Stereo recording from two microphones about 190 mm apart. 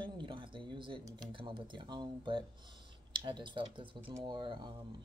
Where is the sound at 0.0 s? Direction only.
25° right (ahead or behind).